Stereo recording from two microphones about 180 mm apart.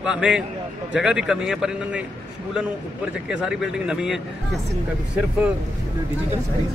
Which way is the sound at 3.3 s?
5° right (ahead or behind).